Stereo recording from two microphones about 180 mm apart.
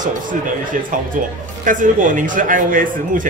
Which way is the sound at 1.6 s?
45° right (ahead or behind).